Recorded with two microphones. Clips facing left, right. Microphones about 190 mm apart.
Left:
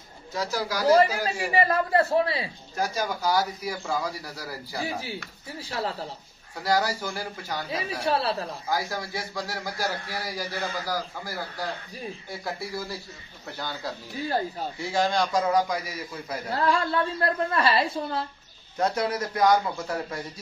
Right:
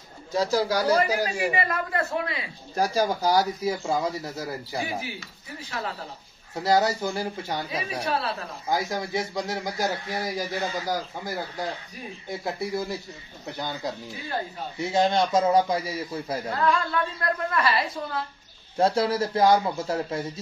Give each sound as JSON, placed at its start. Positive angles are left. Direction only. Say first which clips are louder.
{"t": 0.4, "sound": "speech", "louder": "right 6 dB", "side_deg": -30}
{"t": 0.9, "sound": "a man's voice", "louder": "left 2 dB", "side_deg": 30}
{"t": 2.7, "sound": "speech", "louder": "right 5 dB", "side_deg": -30}
{"t": 5.6, "sound": "a man's voice", "louder": "left 3 dB", "side_deg": 35}
{"t": 6.5, "sound": "speech", "louder": "right 3 dB", "side_deg": -25}
{"t": 8.0, "sound": "a man's voice", "louder": "left 4 dB", "side_deg": 30}
{"t": 8.6, "sound": "speech", "louder": "right 4 dB", "side_deg": -20}
{"t": 16.4, "sound": "a woman's voice", "louder": "left 1 dB", "side_deg": 30}
{"t": 18.8, "sound": "speech", "louder": "right 4 dB", "side_deg": -30}